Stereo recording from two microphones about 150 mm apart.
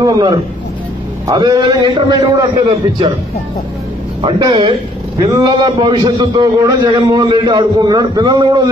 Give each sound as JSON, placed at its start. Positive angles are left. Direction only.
{"t": 0.0, "sound": "a man's voice", "side_deg": -25}
{"t": 4.2, "sound": "a man's voice", "side_deg": -35}